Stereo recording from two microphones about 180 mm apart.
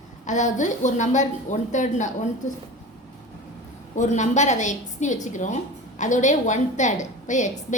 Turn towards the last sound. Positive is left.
turn(degrees=45)  # may be behind; listen again after turning